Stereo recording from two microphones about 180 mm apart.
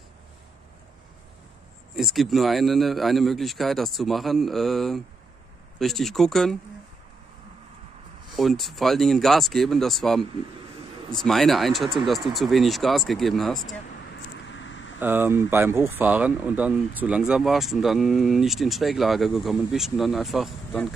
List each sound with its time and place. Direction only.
2.0 s speech: centre (ahead or behind)
8.4 s speech: centre (ahead or behind)
14.5 s a sound: 90° left
15.0 s speech: 10° right (ahead or behind)